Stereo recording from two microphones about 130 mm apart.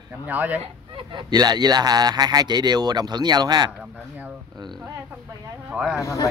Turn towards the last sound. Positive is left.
turn(degrees=25)  # may be behind; listen again after turning